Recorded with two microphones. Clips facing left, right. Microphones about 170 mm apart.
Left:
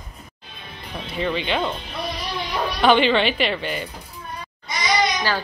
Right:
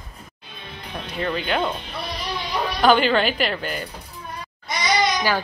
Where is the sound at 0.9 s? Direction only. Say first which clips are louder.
Left 1 dB; centre (ahead or behind).